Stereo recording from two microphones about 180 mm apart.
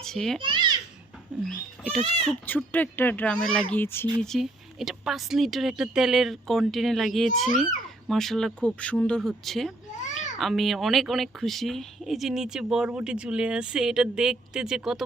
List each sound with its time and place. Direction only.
0.0 s a child's voice: 5° left (ahead or behind)
0.3 s a child's voice: 25° right (ahead or behind)
1.5 s speech: centre (ahead or behind)
4.2 s speech: centre (ahead or behind)